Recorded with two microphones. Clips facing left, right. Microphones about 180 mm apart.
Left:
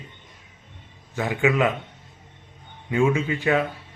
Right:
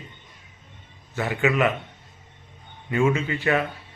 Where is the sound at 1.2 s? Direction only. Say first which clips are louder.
Left 1 dB; 15° left (ahead or behind).